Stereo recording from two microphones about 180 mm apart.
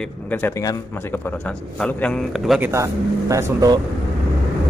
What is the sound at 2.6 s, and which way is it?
Speech, 15° right (ahead or behind).